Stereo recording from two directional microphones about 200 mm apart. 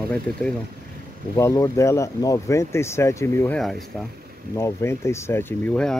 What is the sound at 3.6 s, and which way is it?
Speech, centre (ahead or behind).